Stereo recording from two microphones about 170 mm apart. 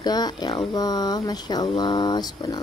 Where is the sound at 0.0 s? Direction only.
25° left (ahead or behind).